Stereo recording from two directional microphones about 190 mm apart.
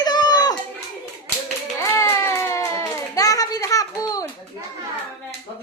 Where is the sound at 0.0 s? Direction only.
20° left (ahead or behind).